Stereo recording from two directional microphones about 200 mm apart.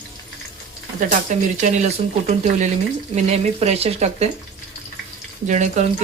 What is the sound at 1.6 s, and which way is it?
Speech, 35° right (ahead or behind).